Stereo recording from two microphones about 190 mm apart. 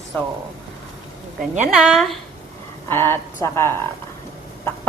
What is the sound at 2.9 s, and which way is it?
A woman's voice, 10° left (ahead or behind).